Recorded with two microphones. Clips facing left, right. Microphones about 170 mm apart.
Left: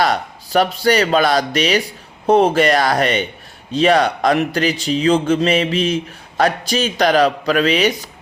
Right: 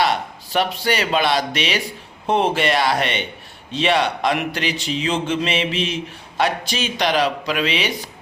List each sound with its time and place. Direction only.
0.0 s speech: 40° left (ahead or behind)